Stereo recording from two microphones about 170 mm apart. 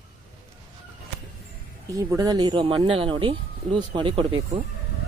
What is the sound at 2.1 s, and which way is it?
Speech, 20° right (ahead or behind).